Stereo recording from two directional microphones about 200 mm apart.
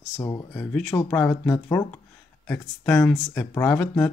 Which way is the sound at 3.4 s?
10° left (ahead or behind).